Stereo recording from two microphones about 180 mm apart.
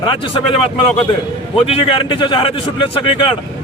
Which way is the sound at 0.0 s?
25° left (ahead or behind).